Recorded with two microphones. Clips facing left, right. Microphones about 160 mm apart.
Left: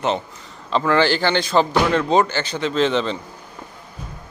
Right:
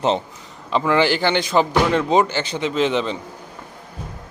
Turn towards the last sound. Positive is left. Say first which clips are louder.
# left 1 dB
turn(degrees=-15)  # may be behind; listen again after turning